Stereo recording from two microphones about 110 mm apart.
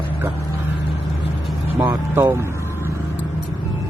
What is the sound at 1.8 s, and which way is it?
Speech, 30° right (ahead or behind).